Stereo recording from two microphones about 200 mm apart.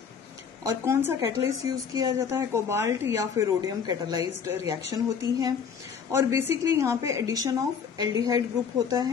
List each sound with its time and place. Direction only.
0.7 s a woman's voice: 10° right (ahead or behind)
6.1 s a woman's voice: 10° right (ahead or behind)